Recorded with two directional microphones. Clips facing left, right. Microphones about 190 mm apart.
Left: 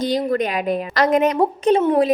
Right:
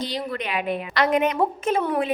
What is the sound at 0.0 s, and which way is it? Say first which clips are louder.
A woman's voice: left 9 dB; 45° left (ahead or behind).